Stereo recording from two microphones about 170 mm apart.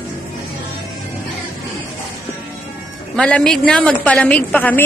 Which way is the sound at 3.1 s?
5° left (ahead or behind).